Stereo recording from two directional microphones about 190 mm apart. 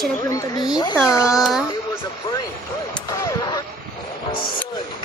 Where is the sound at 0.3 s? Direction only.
20° left (ahead or behind).